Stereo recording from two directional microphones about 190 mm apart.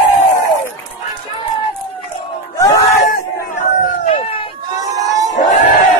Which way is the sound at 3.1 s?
40° left (ahead or behind).